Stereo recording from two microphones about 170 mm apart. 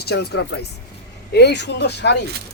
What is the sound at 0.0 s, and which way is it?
Speech, 70° left (ahead or behind).